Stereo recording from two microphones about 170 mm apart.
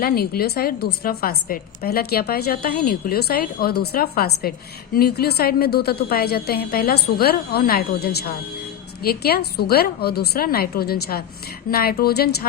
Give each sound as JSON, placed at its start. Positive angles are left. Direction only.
{"t": 0.0, "sound": "a woman's voice", "side_deg": 65}